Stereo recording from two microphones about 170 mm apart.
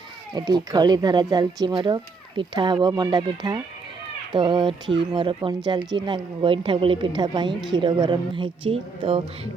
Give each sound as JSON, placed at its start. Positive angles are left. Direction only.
{"t": 0.3, "sound": "a woman's voice", "side_deg": -25}